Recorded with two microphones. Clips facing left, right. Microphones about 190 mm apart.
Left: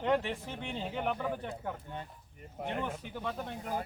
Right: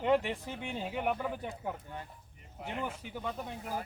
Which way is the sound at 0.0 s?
10° right (ahead or behind).